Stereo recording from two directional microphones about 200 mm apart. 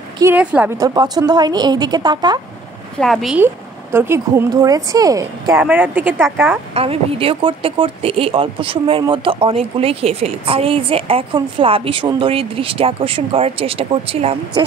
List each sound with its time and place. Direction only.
0.2 s speech: 10° right (ahead or behind)
3.0 s speech: centre (ahead or behind)
6.7 s speech: 30° right (ahead or behind)